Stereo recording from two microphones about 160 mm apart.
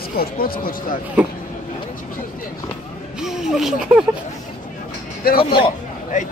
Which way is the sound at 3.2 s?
5° right (ahead or behind).